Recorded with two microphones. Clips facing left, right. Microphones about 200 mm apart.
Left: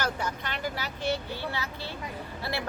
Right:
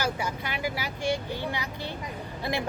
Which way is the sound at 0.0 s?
10° right (ahead or behind).